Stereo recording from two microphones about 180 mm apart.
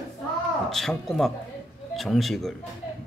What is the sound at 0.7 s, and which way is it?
Speech, centre (ahead or behind).